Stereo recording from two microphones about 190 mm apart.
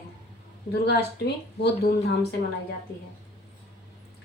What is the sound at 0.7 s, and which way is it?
A woman's voice, 60° left (ahead or behind).